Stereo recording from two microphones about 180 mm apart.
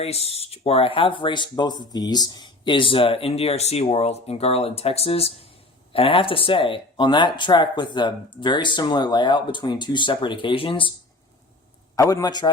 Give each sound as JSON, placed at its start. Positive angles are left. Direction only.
{"t": 0.0, "sound": "speech", "side_deg": 35}
{"t": 11.9, "sound": "speech", "side_deg": 20}